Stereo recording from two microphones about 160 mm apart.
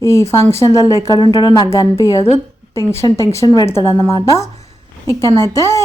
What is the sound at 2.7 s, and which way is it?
A woman's voice, 15° left (ahead or behind).